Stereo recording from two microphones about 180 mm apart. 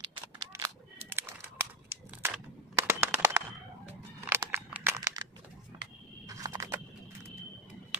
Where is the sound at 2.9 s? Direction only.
10° right (ahead or behind).